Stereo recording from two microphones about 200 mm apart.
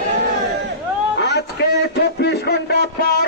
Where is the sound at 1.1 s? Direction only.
55° left (ahead or behind).